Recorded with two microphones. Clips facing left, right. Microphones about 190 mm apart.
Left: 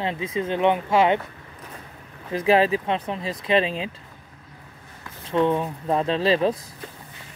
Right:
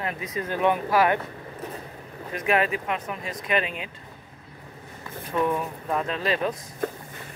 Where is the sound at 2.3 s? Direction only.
30° left (ahead or behind).